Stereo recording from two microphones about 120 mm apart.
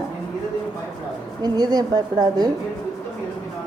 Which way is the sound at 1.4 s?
35° right (ahead or behind).